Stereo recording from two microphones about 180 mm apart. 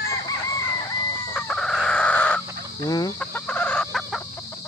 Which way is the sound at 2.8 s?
20° left (ahead or behind).